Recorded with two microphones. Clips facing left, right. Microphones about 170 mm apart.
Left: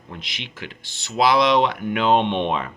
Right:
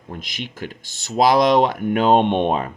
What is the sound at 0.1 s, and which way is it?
Speech, 45° right (ahead or behind).